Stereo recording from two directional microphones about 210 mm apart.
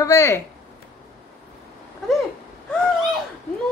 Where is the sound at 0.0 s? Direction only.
15° left (ahead or behind).